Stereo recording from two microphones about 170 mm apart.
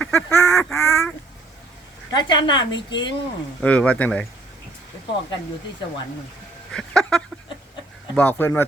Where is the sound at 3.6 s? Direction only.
10° left (ahead or behind).